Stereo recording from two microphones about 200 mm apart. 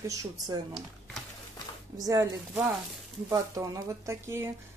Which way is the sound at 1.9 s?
15° right (ahead or behind).